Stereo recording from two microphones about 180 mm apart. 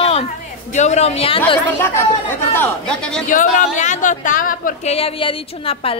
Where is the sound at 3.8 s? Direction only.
45° left (ahead or behind).